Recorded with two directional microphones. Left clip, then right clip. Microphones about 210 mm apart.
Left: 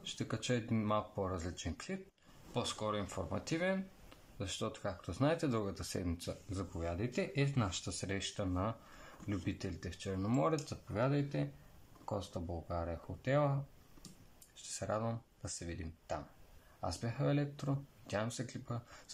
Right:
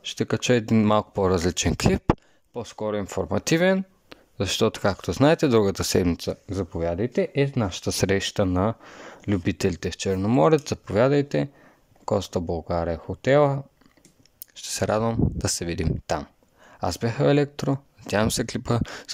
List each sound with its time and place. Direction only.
0.0 s speech: 45° right (ahead or behind)
10.6 s speech: 45° right (ahead or behind)